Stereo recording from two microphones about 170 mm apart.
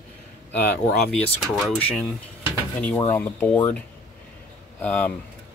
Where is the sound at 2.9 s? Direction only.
25° left (ahead or behind).